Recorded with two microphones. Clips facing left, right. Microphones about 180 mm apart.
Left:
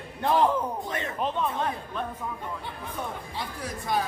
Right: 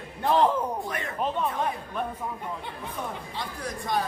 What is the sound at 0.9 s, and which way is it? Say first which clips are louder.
Speech: left 1 dB; 25° left (ahead or behind).